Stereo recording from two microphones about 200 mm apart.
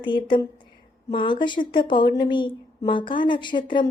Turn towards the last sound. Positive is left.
turn(degrees=25)  # may be behind; listen again after turning